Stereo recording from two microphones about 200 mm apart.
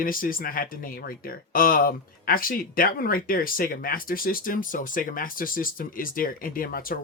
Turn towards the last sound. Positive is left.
turn(degrees=45)  # may be behind; listen again after turning